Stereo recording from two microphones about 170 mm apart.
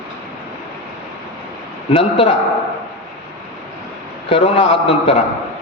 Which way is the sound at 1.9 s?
30° left (ahead or behind).